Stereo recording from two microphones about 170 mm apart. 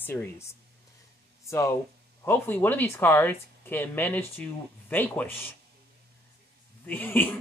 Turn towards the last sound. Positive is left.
turn(degrees=10)  # may be behind; listen again after turning